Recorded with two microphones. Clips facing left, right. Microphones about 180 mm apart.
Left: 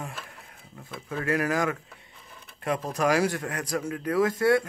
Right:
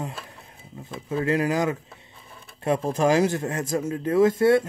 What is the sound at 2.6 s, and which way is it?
Speech, 25° right (ahead or behind).